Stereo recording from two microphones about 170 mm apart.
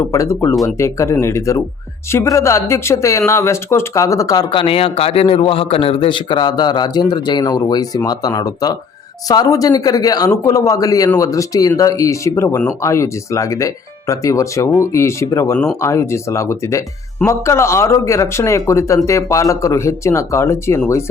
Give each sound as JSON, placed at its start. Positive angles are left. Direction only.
{"t": 0.0, "sound": "speech", "side_deg": 20}